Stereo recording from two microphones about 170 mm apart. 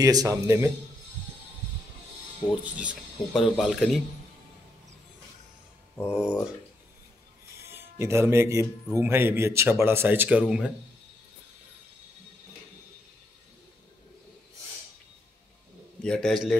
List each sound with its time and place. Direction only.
0.0 s speech: 20° right (ahead or behind)
2.6 s speech: 5° right (ahead or behind)
6.0 s speech: 5° right (ahead or behind)
7.6 s speech: 15° right (ahead or behind)
16.0 s speech: 5° left (ahead or behind)